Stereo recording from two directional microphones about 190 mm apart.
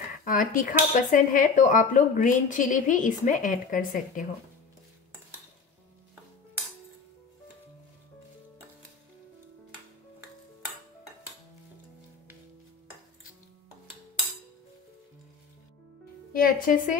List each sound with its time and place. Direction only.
0.2 s speech: 45° left (ahead or behind)
16.3 s a woman's voice: 45° left (ahead or behind)